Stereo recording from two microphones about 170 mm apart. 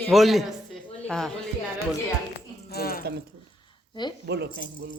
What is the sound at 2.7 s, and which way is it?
Speech, 60° left (ahead or behind).